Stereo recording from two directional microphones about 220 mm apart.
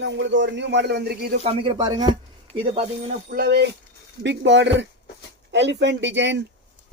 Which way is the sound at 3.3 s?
45° right (ahead or behind).